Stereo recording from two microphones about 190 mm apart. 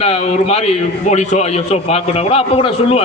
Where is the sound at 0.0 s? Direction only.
35° left (ahead or behind).